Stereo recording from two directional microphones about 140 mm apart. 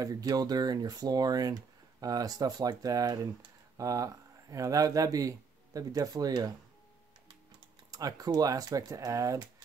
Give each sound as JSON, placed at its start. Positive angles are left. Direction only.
{"t": 0.0, "sound": "speech", "side_deg": -25}
{"t": 7.9, "sound": "speech", "side_deg": -25}